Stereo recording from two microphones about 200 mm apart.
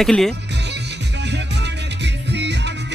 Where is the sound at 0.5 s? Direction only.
60° right (ahead or behind).